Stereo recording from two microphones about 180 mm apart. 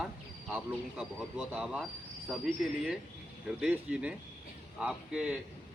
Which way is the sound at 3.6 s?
5° right (ahead or behind).